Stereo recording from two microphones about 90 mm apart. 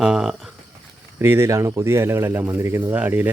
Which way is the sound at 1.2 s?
30° right (ahead or behind).